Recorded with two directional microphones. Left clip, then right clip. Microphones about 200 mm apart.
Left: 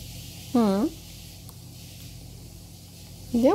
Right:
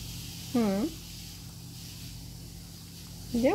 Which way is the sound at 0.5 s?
25° left (ahead or behind).